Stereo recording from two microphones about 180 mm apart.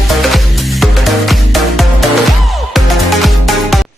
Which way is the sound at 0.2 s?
Centre (ahead or behind).